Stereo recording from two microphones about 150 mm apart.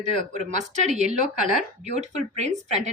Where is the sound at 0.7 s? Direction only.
50° right (ahead or behind).